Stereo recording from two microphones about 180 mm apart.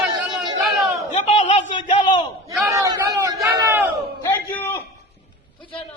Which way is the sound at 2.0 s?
25° left (ahead or behind).